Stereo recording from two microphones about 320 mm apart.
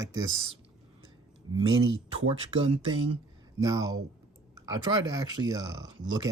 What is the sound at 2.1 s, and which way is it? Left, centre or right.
Speech, centre.